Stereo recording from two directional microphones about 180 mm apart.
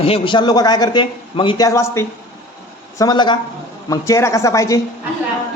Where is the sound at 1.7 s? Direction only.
15° left (ahead or behind).